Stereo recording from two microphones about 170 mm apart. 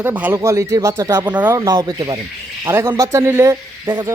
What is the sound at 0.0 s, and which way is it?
A man's voice, 10° right (ahead or behind).